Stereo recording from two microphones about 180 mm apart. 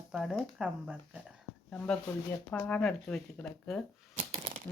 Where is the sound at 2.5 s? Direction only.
5° left (ahead or behind).